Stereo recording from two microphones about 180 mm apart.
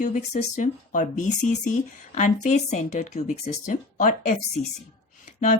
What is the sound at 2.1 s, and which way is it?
Speech, 40° left (ahead or behind).